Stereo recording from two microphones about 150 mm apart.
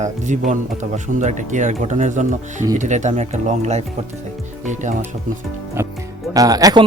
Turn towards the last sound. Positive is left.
turn(degrees=-25)  # may be behind; listen again after turning